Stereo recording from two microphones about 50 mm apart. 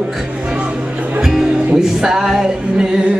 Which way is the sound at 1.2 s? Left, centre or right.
Centre.